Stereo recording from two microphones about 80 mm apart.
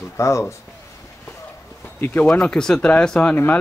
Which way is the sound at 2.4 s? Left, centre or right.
Centre.